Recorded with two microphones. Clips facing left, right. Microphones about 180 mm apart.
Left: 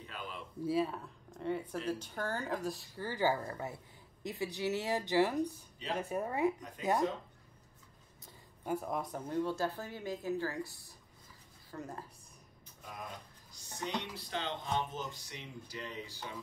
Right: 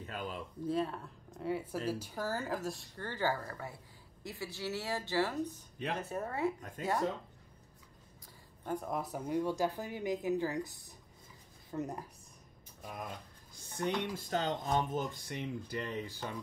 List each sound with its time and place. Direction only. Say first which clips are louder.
0.0 s a sound: right 4 dB; 45° right (ahead or behind)
0.7 s a woman's voice: left 2 dB; 5° left (ahead or behind)
6.8 s speech: left 2 dB; 45° right (ahead or behind)
8.6 s speech: left 1 dB; 5° left (ahead or behind); by 12.0 s 20° right (ahead or behind)
13.7 s speech: right 5 dB; 50° right (ahead or behind)